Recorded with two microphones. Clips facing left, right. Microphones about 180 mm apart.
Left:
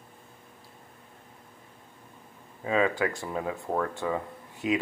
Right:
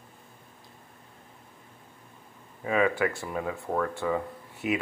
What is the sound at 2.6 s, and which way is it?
Speech, 25° left (ahead or behind).